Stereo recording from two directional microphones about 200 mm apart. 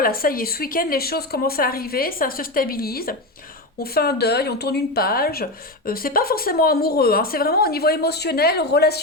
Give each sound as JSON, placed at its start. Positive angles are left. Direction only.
{"t": 0.0, "sound": "speech", "side_deg": 45}